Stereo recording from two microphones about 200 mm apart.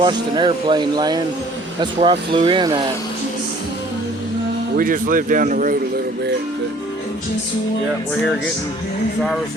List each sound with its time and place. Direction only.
0.0 s speech: 20° right (ahead or behind)
4.8 s speech: 45° right (ahead or behind)